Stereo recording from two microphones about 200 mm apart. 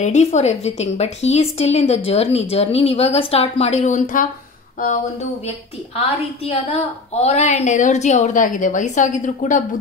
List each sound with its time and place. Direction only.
0.0 s a woman's voice: 35° left (ahead or behind)
6.4 s a woman's voice: 30° left (ahead or behind)